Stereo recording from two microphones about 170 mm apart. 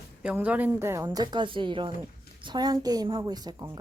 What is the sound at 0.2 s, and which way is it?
A woman's voice, 10° right (ahead or behind).